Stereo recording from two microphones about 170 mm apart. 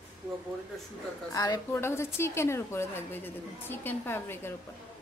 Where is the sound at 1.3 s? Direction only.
20° left (ahead or behind).